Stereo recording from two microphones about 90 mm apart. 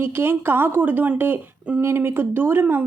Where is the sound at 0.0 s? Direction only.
25° right (ahead or behind).